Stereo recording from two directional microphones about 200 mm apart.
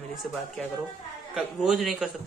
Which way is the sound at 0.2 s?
Centre (ahead or behind).